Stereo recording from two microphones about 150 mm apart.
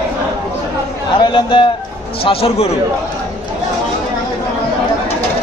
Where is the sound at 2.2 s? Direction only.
40° left (ahead or behind).